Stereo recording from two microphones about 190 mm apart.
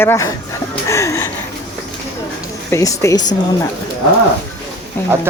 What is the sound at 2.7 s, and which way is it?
Speech, 15° left (ahead or behind).